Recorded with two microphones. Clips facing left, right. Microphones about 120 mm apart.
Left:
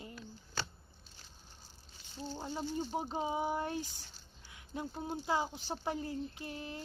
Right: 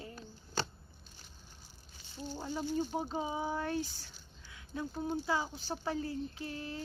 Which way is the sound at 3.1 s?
20° left (ahead or behind).